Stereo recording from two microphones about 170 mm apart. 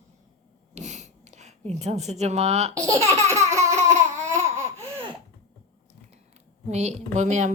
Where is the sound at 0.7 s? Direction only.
45° right (ahead or behind).